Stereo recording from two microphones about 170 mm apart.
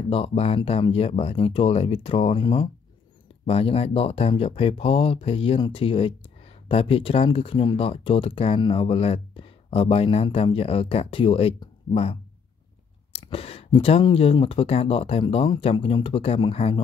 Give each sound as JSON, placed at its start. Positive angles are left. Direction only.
{"t": 0.1, "sound": "speech", "side_deg": 35}